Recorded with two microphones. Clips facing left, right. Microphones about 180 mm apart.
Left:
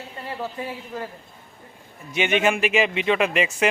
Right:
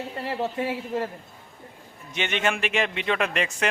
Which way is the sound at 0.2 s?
25° right (ahead or behind).